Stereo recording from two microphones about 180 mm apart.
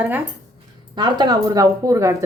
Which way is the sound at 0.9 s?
25° right (ahead or behind).